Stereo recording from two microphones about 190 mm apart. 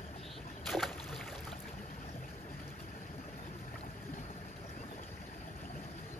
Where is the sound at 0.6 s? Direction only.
Centre (ahead or behind).